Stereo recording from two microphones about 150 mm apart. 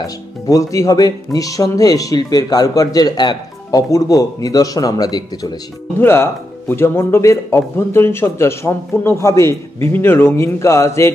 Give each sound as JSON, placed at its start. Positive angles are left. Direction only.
{"t": 0.0, "sound": "speech", "side_deg": 20}
{"t": 5.9, "sound": "speech", "side_deg": 15}